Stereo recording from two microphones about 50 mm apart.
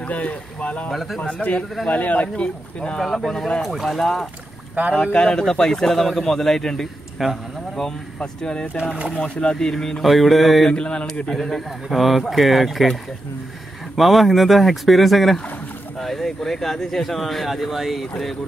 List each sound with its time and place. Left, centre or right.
0.0 s speech: left
2.2 s speech: left
3.0 s speech: centre
4.8 s speech: right
5.2 s speech: centre
7.2 s speech: centre
7.8 s speech: centre
9.6 s speech: centre
10.0 s speech: centre
10.7 s speech: centre
11.2 s speech: centre
13.9 s speech: centre